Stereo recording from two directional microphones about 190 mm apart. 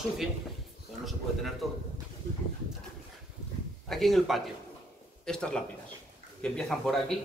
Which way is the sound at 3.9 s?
Centre (ahead or behind).